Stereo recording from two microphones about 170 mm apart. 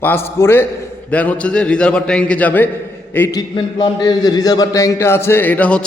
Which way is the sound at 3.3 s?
25° left (ahead or behind).